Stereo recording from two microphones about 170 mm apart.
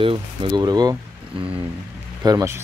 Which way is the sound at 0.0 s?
30° right (ahead or behind).